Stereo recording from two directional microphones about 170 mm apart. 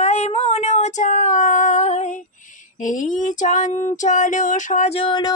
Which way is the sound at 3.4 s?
45° left (ahead or behind).